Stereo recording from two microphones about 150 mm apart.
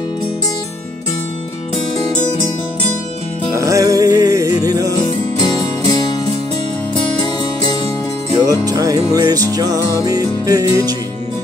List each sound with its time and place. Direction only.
3.5 s music: 20° right (ahead or behind)
5.4 s music: 30° left (ahead or behind)
8.5 s music: 25° right (ahead or behind)